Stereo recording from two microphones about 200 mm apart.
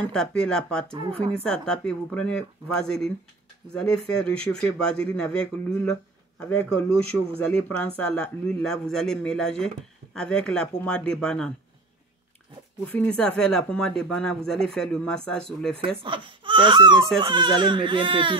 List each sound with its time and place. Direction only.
0.1 s speech: 5° left (ahead or behind)
0.9 s speech: 30° right (ahead or behind)
1.5 s speech: 5° left (ahead or behind)
4.2 s speech: 5° left (ahead or behind)
12.8 s speech: 5° left (ahead or behind)
16.0 s speech: 25° right (ahead or behind)